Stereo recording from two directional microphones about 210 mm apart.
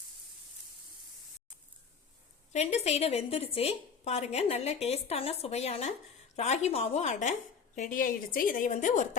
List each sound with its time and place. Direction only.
2.5 s a woman's voice: 30° left (ahead or behind)